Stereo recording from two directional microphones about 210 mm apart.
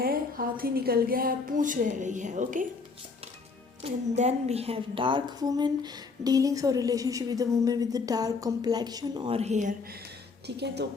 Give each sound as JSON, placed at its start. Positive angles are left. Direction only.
{"t": 0.0, "sound": "a woman's voice", "side_deg": -45}
{"t": 3.8, "sound": "a woman's voice", "side_deg": -30}
{"t": 10.4, "sound": "speech", "side_deg": -55}